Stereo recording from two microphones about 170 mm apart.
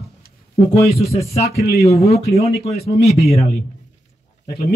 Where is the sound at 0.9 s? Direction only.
35° left (ahead or behind).